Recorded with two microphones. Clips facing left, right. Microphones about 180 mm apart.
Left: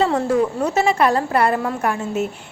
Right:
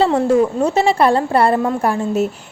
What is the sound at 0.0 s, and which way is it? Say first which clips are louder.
A woman's voice: right 4 dB; 25° right (ahead or behind).